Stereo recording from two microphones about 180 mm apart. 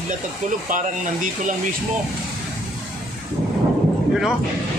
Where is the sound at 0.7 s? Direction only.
45° right (ahead or behind).